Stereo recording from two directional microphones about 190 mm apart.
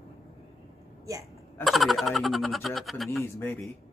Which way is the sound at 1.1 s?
15° right (ahead or behind).